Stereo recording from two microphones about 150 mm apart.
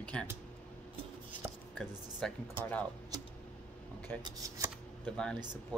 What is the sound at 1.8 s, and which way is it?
Speech, 5° left (ahead or behind).